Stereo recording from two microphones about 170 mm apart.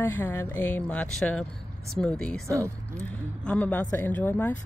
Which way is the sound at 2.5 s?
15° right (ahead or behind).